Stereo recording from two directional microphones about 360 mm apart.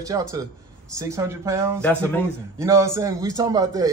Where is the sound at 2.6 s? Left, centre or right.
Centre.